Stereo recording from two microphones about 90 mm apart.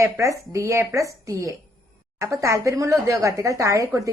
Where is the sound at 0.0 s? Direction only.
35° right (ahead or behind).